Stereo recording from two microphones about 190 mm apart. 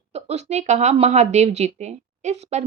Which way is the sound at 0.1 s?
35° right (ahead or behind).